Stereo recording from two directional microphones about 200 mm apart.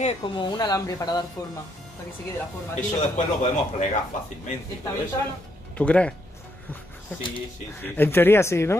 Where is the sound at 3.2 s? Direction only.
35° left (ahead or behind).